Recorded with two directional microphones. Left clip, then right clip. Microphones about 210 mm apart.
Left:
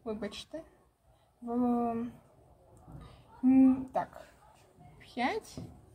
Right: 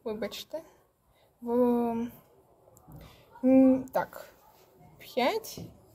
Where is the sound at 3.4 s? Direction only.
45° right (ahead or behind).